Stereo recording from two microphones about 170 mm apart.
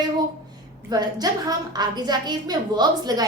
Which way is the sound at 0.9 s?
20° right (ahead or behind).